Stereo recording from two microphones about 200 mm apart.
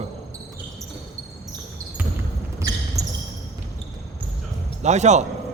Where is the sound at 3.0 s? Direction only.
15° right (ahead or behind).